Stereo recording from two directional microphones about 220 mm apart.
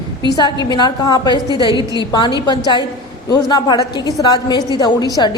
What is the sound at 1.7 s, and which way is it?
Speech, 15° right (ahead or behind).